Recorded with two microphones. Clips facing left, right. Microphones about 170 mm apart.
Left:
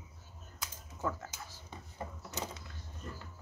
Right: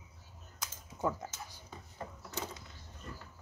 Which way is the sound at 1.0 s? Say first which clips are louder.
Right 3 dB; 15° right (ahead or behind).